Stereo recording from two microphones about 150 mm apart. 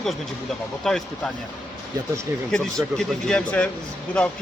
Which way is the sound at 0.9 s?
Centre (ahead or behind).